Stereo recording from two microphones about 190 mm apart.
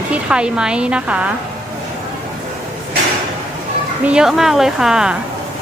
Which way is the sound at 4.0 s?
5° right (ahead or behind).